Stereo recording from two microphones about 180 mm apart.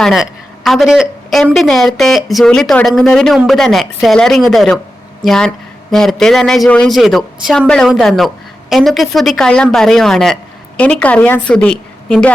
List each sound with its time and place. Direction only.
0.0 s a woman's voice: centre (ahead or behind)